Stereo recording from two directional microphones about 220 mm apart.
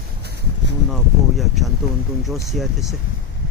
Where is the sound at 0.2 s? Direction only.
50° right (ahead or behind).